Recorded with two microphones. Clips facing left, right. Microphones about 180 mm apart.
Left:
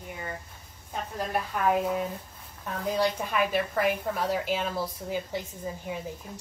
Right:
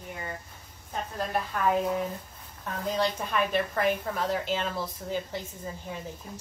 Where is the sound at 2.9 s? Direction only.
10° left (ahead or behind).